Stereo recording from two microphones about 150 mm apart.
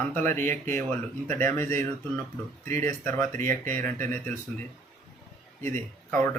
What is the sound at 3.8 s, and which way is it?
Speech, 15° left (ahead or behind).